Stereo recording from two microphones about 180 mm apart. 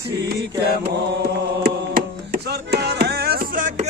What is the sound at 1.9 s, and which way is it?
Music, 60° right (ahead or behind).